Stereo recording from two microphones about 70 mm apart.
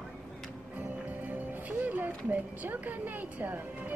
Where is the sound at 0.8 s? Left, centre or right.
Right.